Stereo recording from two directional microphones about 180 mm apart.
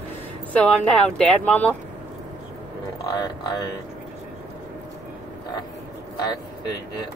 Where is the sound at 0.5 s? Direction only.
5° left (ahead or behind).